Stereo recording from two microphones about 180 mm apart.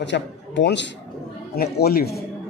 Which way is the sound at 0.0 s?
80° left.